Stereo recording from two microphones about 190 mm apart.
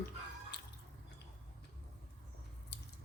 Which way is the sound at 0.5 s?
60° left (ahead or behind).